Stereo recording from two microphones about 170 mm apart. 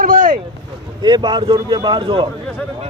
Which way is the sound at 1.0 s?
25° right (ahead or behind).